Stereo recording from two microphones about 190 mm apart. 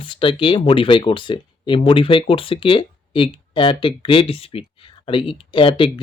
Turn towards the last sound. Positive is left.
turn(degrees=25)  # may be behind; listen again after turning